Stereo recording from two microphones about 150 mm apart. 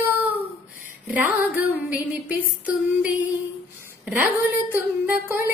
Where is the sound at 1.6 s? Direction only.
10° right (ahead or behind).